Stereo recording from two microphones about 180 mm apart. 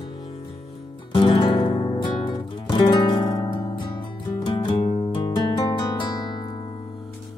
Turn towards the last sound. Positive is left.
turn(degrees=25)  # may be behind; listen again after turning